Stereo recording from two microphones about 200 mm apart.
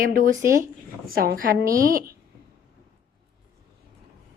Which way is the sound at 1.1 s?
45° right (ahead or behind).